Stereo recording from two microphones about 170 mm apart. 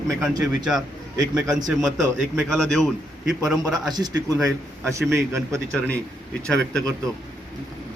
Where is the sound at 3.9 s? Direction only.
25° right (ahead or behind).